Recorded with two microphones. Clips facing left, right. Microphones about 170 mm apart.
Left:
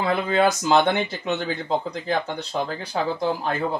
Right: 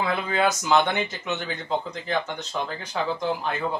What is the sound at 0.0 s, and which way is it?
Speech, 35° left (ahead or behind).